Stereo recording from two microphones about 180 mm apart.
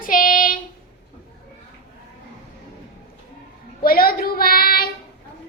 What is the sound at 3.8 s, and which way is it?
A woman's voice, 55° left (ahead or behind).